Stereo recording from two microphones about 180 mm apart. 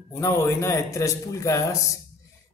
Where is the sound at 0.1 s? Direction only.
15° left (ahead or behind).